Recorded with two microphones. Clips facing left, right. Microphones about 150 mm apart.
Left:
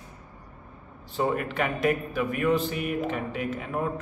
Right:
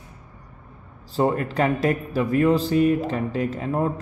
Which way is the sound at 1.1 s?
35° right (ahead or behind).